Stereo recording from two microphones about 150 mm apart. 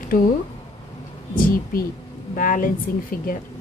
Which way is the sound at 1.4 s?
70° left (ahead or behind).